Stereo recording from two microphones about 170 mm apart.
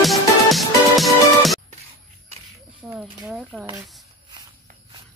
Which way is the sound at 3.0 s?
5° right (ahead or behind).